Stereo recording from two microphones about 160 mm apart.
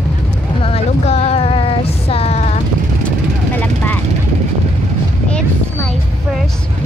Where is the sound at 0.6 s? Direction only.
40° left (ahead or behind).